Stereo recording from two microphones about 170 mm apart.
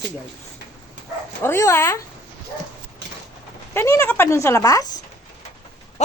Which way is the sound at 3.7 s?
15° left (ahead or behind).